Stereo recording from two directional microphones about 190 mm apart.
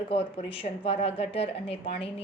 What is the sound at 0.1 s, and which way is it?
A woman's voice, 30° left (ahead or behind).